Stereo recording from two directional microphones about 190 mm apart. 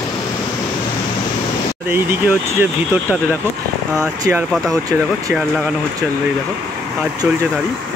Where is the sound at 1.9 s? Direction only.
10° right (ahead or behind).